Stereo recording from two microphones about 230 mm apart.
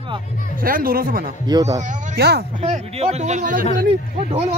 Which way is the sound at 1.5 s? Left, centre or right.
Centre.